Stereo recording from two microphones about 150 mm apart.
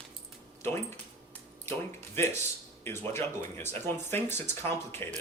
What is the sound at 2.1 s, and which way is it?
Speech, 15° left (ahead or behind).